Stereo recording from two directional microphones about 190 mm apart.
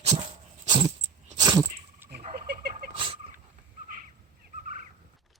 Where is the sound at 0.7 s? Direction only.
25° right (ahead or behind).